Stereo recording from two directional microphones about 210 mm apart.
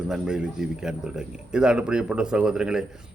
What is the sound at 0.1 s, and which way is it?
A man's voice, 5° right (ahead or behind).